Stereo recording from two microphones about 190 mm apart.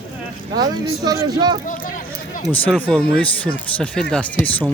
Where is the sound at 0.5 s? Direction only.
20° right (ahead or behind).